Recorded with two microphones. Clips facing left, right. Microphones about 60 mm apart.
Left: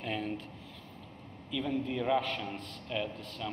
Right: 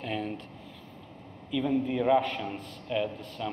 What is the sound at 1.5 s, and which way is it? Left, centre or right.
A man's voice, centre.